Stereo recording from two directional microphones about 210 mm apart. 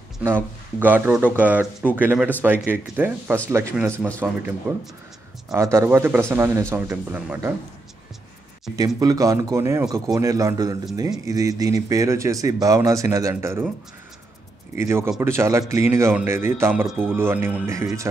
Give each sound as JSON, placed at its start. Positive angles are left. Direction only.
{"t": 0.2, "sound": "speech", "side_deg": -10}
{"t": 8.7, "sound": "speech", "side_deg": -15}
{"t": 14.8, "sound": "speech", "side_deg": -10}